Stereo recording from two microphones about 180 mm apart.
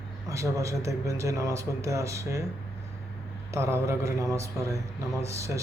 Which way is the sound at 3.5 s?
15° right (ahead or behind).